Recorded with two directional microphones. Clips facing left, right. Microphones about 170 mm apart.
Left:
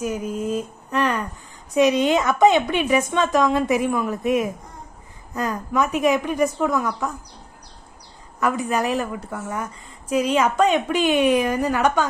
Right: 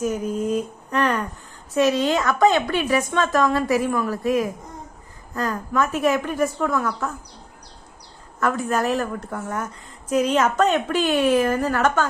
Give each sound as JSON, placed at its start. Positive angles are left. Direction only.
{"t": 0.0, "sound": "a sound", "side_deg": 5}
{"t": 2.0, "sound": "speech", "side_deg": 20}
{"t": 5.3, "sound": "a woman's voice", "side_deg": 20}
{"t": 8.4, "sound": "a woman's voice", "side_deg": 15}